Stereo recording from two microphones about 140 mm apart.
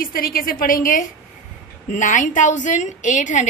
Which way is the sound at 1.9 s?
60° left (ahead or behind).